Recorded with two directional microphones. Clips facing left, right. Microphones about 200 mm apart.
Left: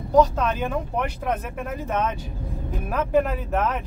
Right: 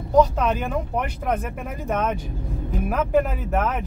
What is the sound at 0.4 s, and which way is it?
Speech, 10° right (ahead or behind).